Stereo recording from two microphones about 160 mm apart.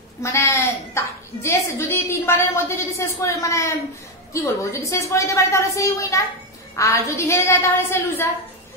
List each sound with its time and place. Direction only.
0.2 s a woman's voice: 15° left (ahead or behind)
4.8 s a woman's voice: 20° left (ahead or behind)